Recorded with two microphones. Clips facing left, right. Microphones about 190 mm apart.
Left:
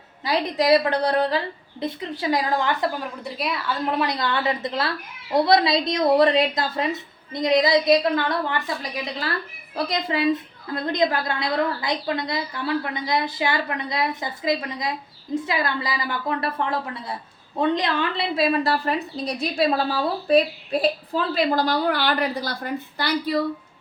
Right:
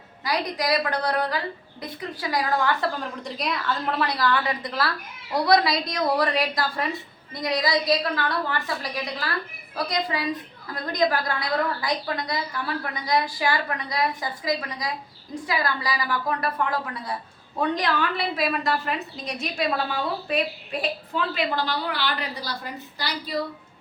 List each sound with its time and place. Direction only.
0.3 s a woman's voice: 25° left (ahead or behind)
3.0 s a woman's voice: 5° left (ahead or behind)
3.9 s a woman's voice: 20° left (ahead or behind); by 23.3 s 55° left (ahead or behind)